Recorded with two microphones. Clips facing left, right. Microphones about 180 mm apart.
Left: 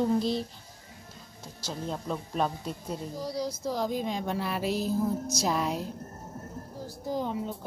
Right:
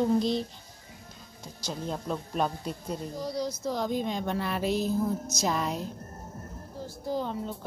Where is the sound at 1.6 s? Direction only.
Centre (ahead or behind).